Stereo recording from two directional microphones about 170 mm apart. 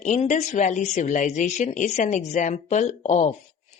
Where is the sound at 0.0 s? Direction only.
45° left (ahead or behind).